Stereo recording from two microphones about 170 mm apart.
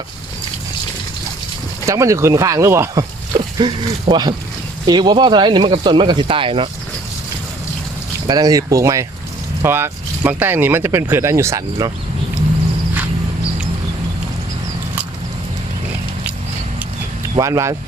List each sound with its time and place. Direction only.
1.9 s speech: 20° right (ahead or behind)
8.3 s speech: 20° right (ahead or behind)
17.3 s speech: 20° right (ahead or behind)